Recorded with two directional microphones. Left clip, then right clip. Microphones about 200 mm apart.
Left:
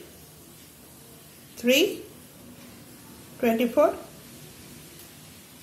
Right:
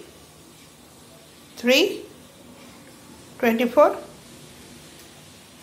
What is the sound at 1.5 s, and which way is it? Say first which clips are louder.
Speech: right 3 dB; 5° right (ahead or behind).